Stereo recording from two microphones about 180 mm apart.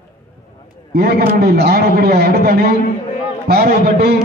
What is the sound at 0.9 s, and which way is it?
A man's voice, 60° right (ahead or behind).